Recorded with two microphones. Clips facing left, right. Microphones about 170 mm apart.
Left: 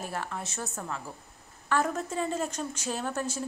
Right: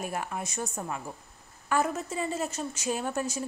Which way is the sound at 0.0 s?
15° right (ahead or behind).